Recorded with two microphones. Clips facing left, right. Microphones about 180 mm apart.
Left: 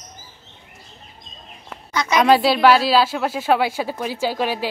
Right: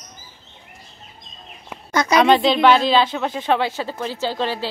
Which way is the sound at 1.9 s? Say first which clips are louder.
Right 3 dB; 45° right (ahead or behind).